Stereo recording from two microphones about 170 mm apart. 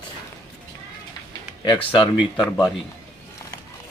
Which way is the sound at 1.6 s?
25° left (ahead or behind).